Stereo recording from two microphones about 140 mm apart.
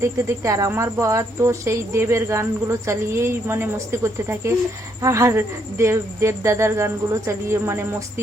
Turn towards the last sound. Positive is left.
turn(degrees=-20)  # may be behind; listen again after turning